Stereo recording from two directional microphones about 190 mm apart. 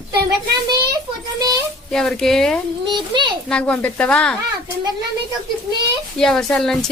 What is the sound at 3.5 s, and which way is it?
Speech, 5° left (ahead or behind).